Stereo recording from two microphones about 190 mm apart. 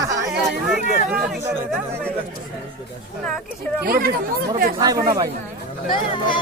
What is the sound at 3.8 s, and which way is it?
Speech, 50° right (ahead or behind).